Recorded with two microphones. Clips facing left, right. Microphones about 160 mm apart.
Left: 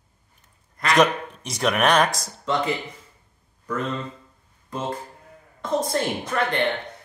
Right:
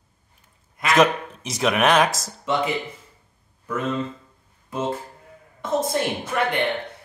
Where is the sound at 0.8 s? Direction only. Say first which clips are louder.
Right 1 dB; centre (ahead or behind).